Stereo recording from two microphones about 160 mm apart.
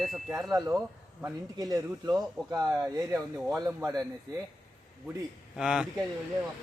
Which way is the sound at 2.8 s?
Centre (ahead or behind).